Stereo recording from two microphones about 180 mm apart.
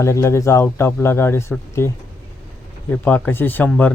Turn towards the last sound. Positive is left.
turn(degrees=10)  # may be behind; listen again after turning